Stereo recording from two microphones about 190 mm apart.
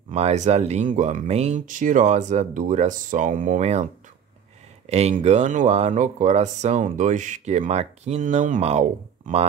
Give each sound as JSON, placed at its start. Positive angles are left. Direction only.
{"t": 0.1, "sound": "speech", "side_deg": -35}